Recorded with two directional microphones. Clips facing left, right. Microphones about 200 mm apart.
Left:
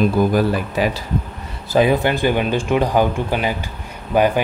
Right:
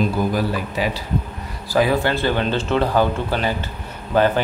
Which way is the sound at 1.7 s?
20° left (ahead or behind).